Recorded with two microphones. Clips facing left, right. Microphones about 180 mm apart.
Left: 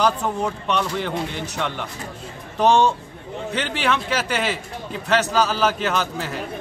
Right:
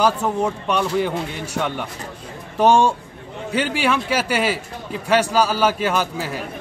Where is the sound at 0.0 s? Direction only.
5° right (ahead or behind).